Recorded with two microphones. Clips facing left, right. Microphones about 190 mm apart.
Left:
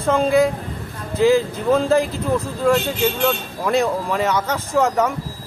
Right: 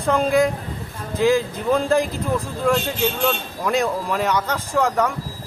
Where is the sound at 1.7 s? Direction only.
Centre (ahead or behind).